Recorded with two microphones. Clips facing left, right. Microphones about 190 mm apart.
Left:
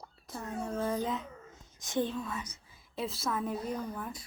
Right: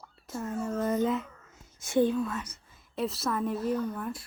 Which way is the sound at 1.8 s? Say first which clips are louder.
Right 7 dB; 10° right (ahead or behind).